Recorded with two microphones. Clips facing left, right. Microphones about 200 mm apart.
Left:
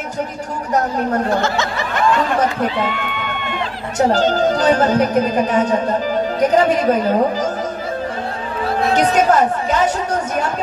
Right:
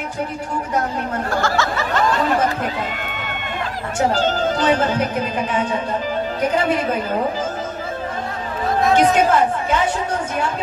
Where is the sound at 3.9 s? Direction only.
40° left (ahead or behind).